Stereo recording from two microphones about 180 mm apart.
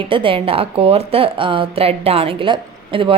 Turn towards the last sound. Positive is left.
turn(degrees=-30)  # may be behind; listen again after turning